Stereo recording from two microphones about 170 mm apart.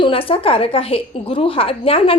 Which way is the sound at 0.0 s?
30° left (ahead or behind).